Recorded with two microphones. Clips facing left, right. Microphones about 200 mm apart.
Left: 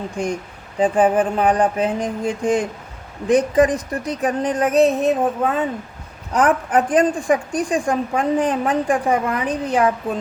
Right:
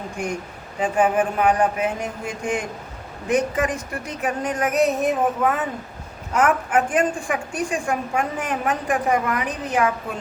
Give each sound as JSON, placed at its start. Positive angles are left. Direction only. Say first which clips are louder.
{"t": 0.8, "sound": "a woman's voice", "louder": "left 4 dB", "side_deg": 30}